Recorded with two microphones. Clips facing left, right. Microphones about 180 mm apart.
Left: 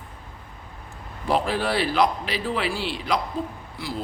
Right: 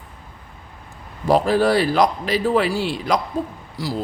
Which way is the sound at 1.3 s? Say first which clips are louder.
Right 7 dB; 40° right (ahead or behind).